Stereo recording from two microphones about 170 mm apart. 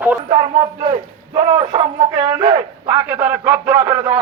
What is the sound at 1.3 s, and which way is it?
A man's voice, 30° right (ahead or behind).